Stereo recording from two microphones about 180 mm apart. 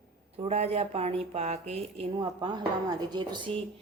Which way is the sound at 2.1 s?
25° right (ahead or behind).